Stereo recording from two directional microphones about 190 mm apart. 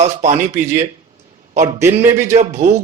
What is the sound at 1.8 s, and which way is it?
Speech, 15° right (ahead or behind).